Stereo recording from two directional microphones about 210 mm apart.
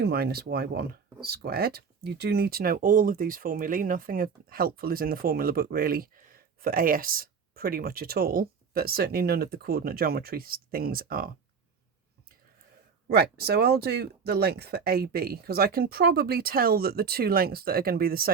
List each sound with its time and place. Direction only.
0.0 s speech: 50° right (ahead or behind)
13.1 s speech: 50° right (ahead or behind)